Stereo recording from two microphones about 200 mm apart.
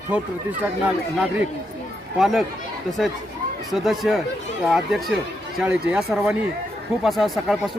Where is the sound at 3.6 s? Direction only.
Centre (ahead or behind).